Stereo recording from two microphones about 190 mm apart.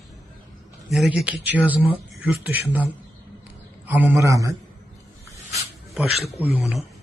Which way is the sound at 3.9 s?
10° right (ahead or behind).